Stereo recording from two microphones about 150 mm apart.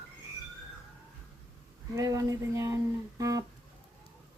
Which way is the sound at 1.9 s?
20° right (ahead or behind).